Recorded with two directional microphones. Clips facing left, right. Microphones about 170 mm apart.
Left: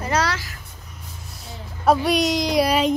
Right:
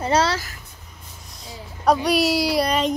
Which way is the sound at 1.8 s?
5° left (ahead or behind).